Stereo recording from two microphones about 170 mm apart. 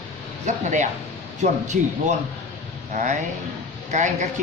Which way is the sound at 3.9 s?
45° right (ahead or behind).